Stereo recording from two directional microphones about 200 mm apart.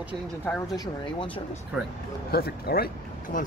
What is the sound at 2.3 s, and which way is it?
Speech, 50° left (ahead or behind).